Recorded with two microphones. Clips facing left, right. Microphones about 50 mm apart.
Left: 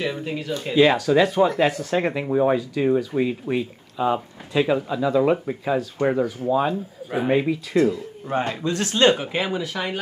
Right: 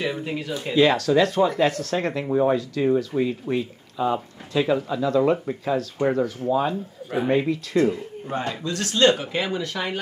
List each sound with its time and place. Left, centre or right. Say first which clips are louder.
0.0 s speech: even; centre
0.7 s speech: left 1 dB; centre
8.3 s speech: left 4 dB; left